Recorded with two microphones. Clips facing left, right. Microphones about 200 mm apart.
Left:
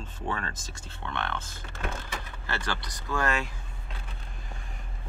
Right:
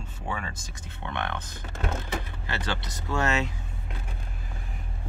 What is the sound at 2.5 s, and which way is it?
Speech, 20° right (ahead or behind).